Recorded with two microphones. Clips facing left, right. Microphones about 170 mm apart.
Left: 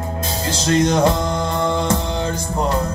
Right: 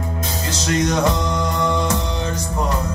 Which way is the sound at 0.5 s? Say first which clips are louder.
Left 3 dB; 30° left (ahead or behind).